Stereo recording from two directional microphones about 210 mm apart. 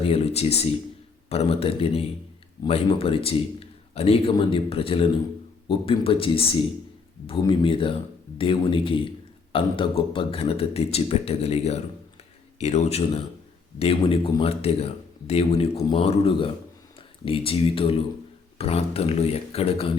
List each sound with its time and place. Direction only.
0.0 s a man's voice: 30° left (ahead or behind)